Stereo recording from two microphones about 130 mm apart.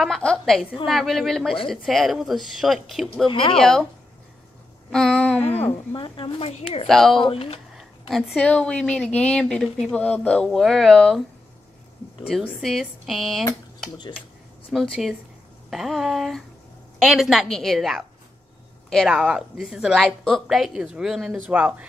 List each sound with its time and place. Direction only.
0.0 s a woman's voice: 5° left (ahead or behind)
3.3 s speech: 40° left (ahead or behind)
3.5 s a woman's voice: 5° left (ahead or behind)
4.9 s a sound: 5° left (ahead or behind)
5.4 s a woman's voice: 50° left (ahead or behind)
6.9 s a woman's voice: centre (ahead or behind)
7.2 s a sound: 45° left (ahead or behind)
8.4 s a woman's voice: 10° left (ahead or behind)
12.3 s a woman's voice: centre (ahead or behind)
14.7 s a woman's voice: centre (ahead or behind)